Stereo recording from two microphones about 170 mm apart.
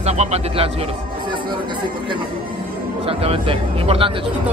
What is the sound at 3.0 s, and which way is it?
Speech, 35° right (ahead or behind).